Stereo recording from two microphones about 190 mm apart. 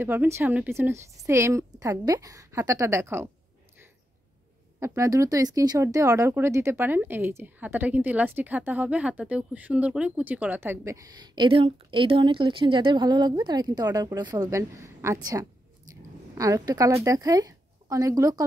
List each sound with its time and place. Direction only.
0.0 s speech: 10° right (ahead or behind)
4.7 s a woman's voice: 15° right (ahead or behind)